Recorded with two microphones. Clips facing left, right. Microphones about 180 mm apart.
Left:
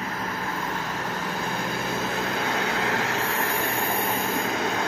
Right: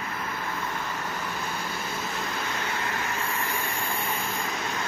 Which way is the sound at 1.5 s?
50° left (ahead or behind).